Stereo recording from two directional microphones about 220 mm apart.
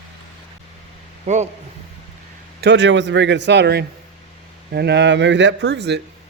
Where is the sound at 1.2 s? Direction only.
30° right (ahead or behind).